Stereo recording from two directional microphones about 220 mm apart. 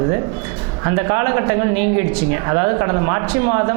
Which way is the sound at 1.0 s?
20° right (ahead or behind).